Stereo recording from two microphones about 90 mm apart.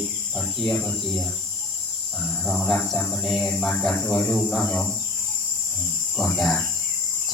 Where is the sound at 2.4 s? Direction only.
5° left (ahead or behind).